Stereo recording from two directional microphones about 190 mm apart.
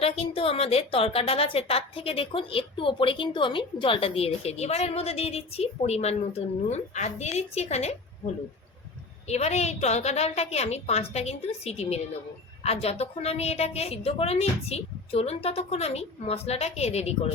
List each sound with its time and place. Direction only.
0.0 s a woman's voice: 30° left (ahead or behind)
9.2 s a woman's voice: 35° left (ahead or behind)